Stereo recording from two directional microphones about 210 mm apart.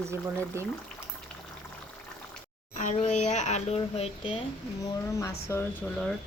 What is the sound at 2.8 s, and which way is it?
Speech, 35° left (ahead or behind).